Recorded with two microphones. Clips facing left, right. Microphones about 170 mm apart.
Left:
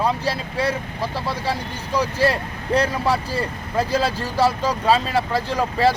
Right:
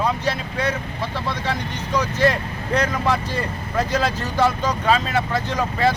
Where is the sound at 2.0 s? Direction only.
35° left (ahead or behind).